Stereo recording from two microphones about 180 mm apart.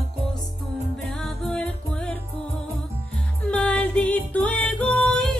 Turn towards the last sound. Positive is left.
turn(degrees=5)  # may be behind; listen again after turning